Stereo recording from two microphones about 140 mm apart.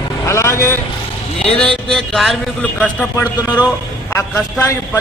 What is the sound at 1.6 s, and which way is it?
A man's voice, 5° left (ahead or behind).